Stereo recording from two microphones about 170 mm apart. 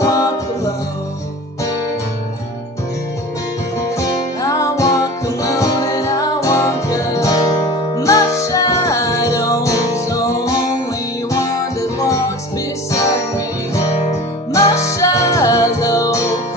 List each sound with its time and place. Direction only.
0.0 s music: 20° left (ahead or behind)
4.0 s music: 20° left (ahead or behind)
14.5 s music: 20° left (ahead or behind)